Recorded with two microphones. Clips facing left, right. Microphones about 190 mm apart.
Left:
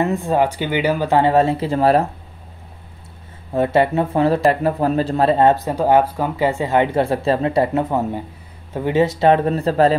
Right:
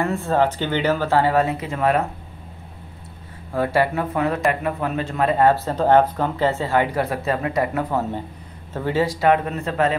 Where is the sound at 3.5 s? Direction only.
25° left (ahead or behind).